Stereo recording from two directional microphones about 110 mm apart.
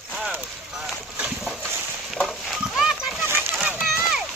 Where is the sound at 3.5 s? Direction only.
5° right (ahead or behind).